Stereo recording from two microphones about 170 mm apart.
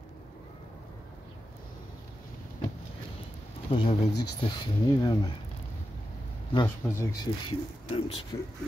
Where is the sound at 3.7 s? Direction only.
30° left (ahead or behind).